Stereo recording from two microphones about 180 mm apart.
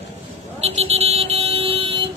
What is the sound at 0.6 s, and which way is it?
Vehicle, 35° right (ahead or behind).